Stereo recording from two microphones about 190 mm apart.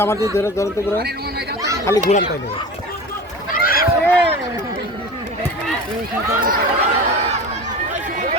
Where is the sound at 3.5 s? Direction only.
50° left (ahead or behind).